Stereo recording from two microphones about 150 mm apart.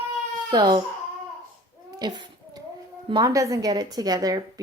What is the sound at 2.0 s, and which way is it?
Speech, 25° right (ahead or behind).